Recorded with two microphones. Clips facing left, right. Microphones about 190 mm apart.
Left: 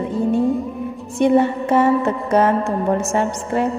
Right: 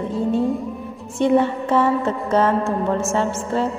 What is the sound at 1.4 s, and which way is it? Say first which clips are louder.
Music: left 2 dB; 15° left (ahead or behind).